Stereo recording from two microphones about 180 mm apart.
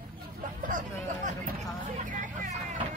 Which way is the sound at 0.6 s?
45° right (ahead or behind).